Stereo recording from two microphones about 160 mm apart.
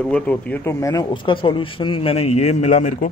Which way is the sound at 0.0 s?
10° left (ahead or behind).